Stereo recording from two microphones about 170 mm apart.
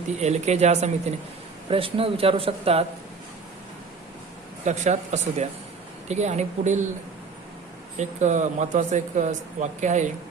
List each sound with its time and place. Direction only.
0.2 s speech: 40° right (ahead or behind)
4.6 s speech: 45° right (ahead or behind)
7.9 s speech: 45° right (ahead or behind)